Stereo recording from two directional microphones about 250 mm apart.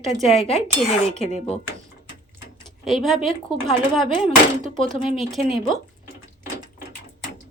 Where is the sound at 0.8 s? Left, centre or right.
Left.